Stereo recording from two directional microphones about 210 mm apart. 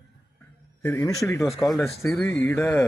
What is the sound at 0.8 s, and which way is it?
Speech, 15° left (ahead or behind).